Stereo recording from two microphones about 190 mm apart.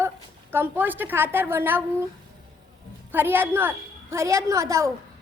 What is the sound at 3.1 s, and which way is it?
A woman's voice, 10° right (ahead or behind).